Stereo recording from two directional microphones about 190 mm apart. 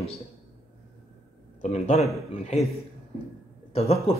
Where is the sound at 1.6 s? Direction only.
40° left (ahead or behind).